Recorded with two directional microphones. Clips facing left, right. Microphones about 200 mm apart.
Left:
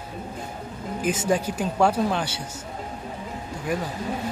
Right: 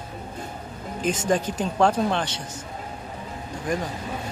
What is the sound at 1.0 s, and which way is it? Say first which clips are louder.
Speech: even; 10° left (ahead or behind).